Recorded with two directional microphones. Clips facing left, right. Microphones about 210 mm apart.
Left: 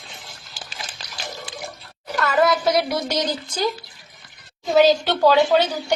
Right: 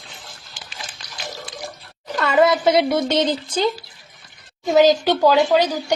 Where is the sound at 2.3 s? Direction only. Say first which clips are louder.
Right 3 dB; 25° right (ahead or behind).